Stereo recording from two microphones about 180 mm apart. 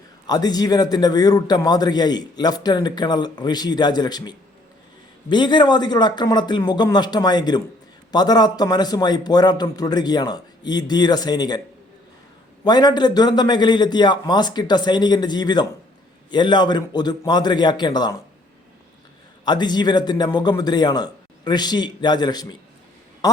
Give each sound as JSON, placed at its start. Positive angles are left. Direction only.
{"t": 0.3, "sound": "a man's voice", "side_deg": 20}
{"t": 12.6, "sound": "a man's voice", "side_deg": 25}
{"t": 19.5, "sound": "a man's voice", "side_deg": 25}